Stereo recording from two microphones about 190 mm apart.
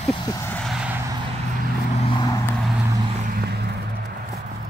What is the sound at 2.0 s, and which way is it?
Vehicle, 25° left (ahead or behind).